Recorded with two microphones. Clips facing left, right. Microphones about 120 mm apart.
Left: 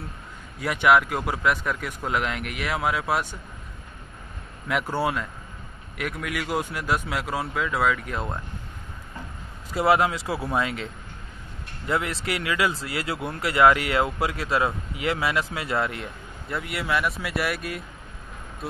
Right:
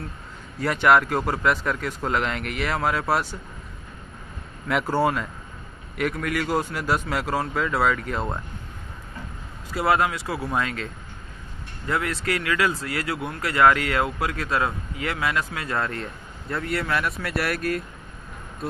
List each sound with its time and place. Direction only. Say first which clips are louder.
0.6 s speech: right 1 dB; 5° left (ahead or behind)
4.6 s speech: right 3 dB; centre (ahead or behind)
9.8 s speech: left 1 dB; 20° left (ahead or behind)
11.9 s speech: right 1 dB; 20° left (ahead or behind); by 17.8 s centre (ahead or behind)